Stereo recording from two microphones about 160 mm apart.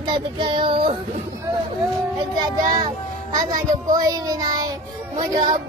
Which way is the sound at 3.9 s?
20° right (ahead or behind).